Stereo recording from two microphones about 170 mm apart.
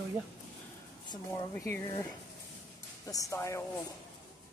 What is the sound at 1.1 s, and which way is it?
Speech, 20° left (ahead or behind).